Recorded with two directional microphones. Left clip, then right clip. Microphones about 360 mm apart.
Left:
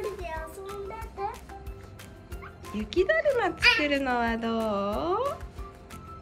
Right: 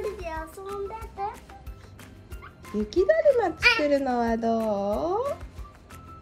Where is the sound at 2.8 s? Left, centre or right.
Right.